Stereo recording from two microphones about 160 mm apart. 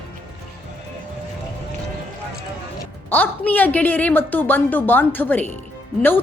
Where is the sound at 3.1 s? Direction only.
10° left (ahead or behind).